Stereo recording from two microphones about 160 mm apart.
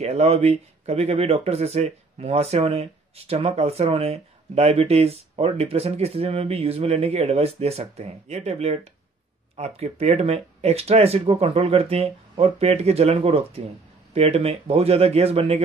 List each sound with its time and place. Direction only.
0.0 s speech: 40° right (ahead or behind)